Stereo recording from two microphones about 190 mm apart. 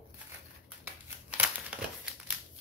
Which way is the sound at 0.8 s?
10° right (ahead or behind).